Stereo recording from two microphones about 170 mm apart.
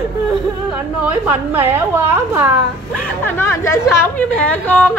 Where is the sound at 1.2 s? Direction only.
10° right (ahead or behind).